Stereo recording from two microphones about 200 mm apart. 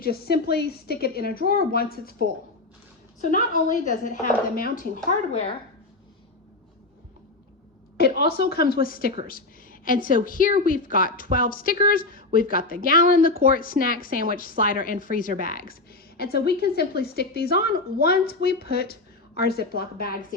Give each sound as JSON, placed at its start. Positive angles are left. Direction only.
{"t": 0.0, "sound": "a woman's voice", "side_deg": 50}
{"t": 3.3, "sound": "a woman's voice", "side_deg": 40}
{"t": 7.9, "sound": "a woman's voice", "side_deg": 55}